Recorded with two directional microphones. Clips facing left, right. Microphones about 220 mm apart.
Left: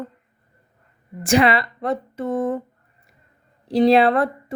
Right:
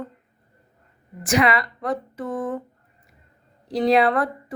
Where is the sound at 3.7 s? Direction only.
30° left (ahead or behind).